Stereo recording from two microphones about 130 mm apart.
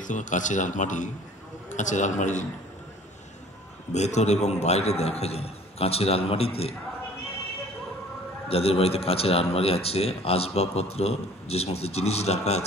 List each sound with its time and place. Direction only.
0.0 s a man's voice: 80° left
3.9 s a man's voice: 60° left (ahead or behind)
8.5 s a man's voice: 50° left (ahead or behind)